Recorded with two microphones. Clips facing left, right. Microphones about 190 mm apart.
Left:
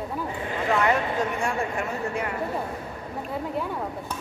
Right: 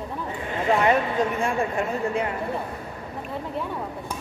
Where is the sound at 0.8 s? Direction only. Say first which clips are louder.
Right 3 dB; 20° right (ahead or behind).